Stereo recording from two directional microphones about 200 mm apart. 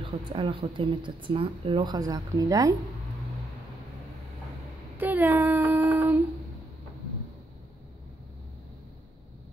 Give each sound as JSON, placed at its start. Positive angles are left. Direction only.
{"t": 0.0, "sound": "speech", "side_deg": -25}
{"t": 4.9, "sound": "child singing", "side_deg": -10}